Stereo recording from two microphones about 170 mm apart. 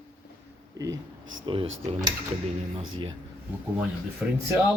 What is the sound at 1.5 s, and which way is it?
Speech, 30° right (ahead or behind).